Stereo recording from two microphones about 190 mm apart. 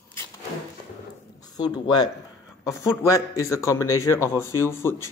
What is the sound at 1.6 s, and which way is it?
A man's voice, 20° left (ahead or behind).